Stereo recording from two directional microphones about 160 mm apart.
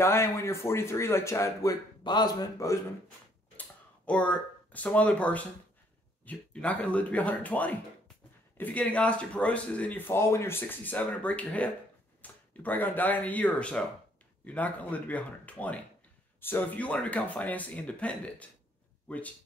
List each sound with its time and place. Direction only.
0.0 s speech: 15° left (ahead or behind)
3.5 s speech: 10° left (ahead or behind)